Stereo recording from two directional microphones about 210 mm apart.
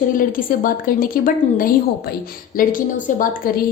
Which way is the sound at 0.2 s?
40° left (ahead or behind).